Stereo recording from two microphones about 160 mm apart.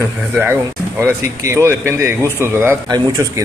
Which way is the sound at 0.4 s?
15° right (ahead or behind).